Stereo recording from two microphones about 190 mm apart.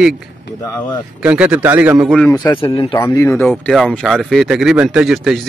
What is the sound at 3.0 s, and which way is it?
Speech, 10° left (ahead or behind).